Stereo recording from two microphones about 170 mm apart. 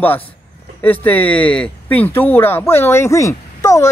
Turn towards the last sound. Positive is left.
turn(degrees=15)  # may be behind; listen again after turning